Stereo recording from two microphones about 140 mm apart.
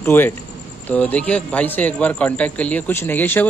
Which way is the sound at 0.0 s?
20° left (ahead or behind).